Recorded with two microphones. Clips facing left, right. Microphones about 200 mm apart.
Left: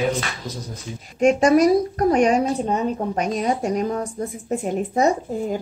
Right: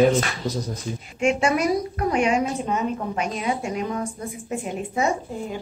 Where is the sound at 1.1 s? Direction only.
40° left (ahead or behind).